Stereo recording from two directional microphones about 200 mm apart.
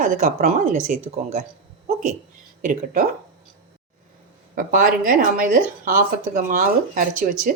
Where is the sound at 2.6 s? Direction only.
45° right (ahead or behind).